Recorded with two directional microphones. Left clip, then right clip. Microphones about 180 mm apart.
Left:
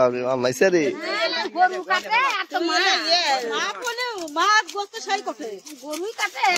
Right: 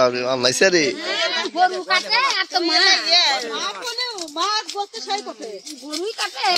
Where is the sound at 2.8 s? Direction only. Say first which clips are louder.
Right 4 dB; 75° left (ahead or behind).